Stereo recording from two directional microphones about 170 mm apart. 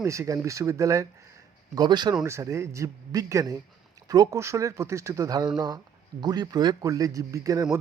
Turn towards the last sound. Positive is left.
turn(degrees=-20)  # may be behind; listen again after turning